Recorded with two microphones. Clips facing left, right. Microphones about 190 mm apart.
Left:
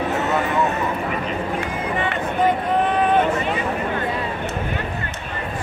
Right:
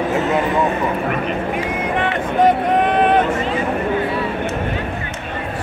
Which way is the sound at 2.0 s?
70° right (ahead or behind).